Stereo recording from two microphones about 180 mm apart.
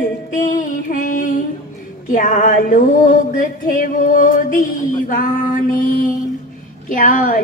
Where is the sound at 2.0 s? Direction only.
45° left (ahead or behind).